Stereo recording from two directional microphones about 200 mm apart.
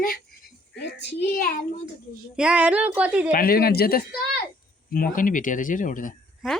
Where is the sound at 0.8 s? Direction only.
60° left (ahead or behind).